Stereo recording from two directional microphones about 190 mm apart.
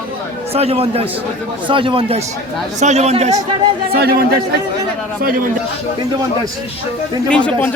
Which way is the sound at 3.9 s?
55° right (ahead or behind).